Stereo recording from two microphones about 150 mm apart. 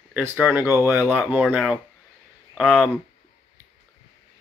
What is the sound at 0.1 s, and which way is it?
Speech, 15° right (ahead or behind).